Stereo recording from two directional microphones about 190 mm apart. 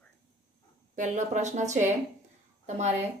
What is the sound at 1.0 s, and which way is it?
Speech, 40° right (ahead or behind).